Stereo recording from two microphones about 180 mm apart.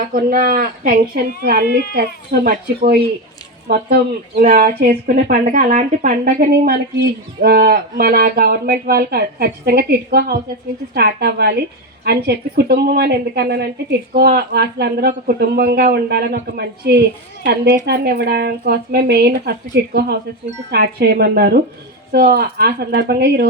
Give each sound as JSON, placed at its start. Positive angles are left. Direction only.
{"t": 0.0, "sound": "speech", "side_deg": -50}